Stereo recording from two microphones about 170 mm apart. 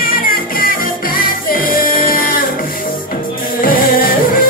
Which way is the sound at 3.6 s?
55° left (ahead or behind).